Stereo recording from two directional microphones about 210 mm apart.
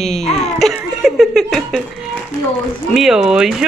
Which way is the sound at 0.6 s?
Centre (ahead or behind).